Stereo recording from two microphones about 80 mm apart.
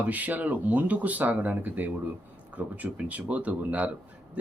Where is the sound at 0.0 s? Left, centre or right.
Centre.